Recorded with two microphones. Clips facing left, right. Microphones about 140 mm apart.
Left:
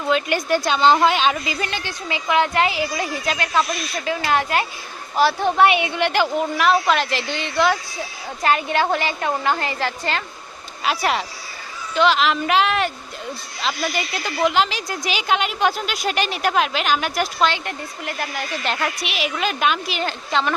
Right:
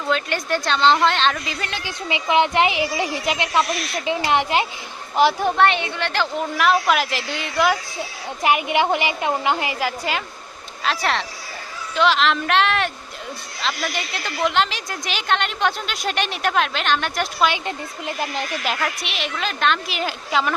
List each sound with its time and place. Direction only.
0.1 s a woman's voice: 5° left (ahead or behind)
2.0 s speech: 20° right (ahead or behind)
5.5 s a woman's voice: 10° left (ahead or behind)
6.6 s a woman's voice: 5° right (ahead or behind)
10.8 s a woman's voice: 5° left (ahead or behind)
17.4 s speech: 15° right (ahead or behind)
18.6 s a woman's voice: centre (ahead or behind)
20.0 s a woman's voice: 5° right (ahead or behind)